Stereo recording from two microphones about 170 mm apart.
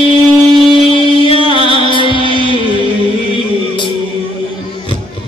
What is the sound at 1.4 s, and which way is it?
Music, 30° left (ahead or behind).